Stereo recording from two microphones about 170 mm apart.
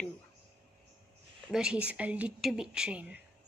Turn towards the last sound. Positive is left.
turn(degrees=-5)  # may be behind; listen again after turning